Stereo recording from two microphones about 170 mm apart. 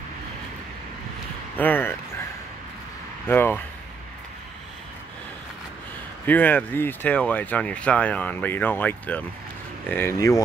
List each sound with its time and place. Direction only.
1.6 s a sound: 10° left (ahead or behind)
3.3 s speech: 10° left (ahead or behind)
6.2 s speech: 10° left (ahead or behind)